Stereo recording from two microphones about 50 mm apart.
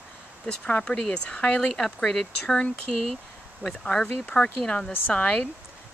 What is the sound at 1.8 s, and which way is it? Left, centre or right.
Speech, centre.